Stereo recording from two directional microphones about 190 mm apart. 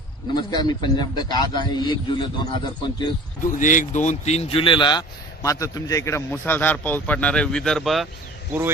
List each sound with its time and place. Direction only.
0.4 s a man's voice: 20° left (ahead or behind)
3.5 s speech: 40° left (ahead or behind); by 8.1 s centre (ahead or behind)